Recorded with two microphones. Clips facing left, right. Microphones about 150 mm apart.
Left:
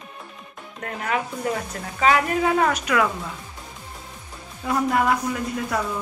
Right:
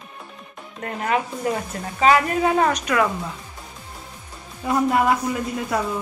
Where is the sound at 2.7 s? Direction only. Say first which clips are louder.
Right 1 dB; 5° left (ahead or behind).